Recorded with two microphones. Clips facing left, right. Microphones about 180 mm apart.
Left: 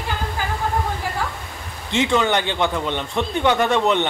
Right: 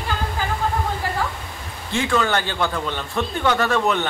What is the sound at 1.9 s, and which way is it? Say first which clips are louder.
A man's voice: left 2 dB; 20° left (ahead or behind).